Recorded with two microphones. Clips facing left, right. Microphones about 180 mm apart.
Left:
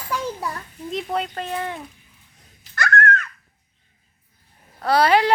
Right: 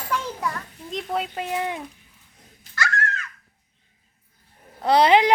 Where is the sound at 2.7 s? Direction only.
60° left (ahead or behind).